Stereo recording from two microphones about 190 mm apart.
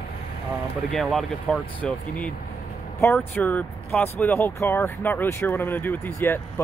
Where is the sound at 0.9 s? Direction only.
5° left (ahead or behind).